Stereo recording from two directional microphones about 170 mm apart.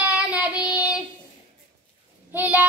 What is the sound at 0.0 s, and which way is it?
Child singing, 10° right (ahead or behind).